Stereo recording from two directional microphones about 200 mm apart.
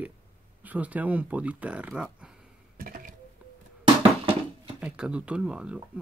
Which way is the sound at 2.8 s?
45° right (ahead or behind).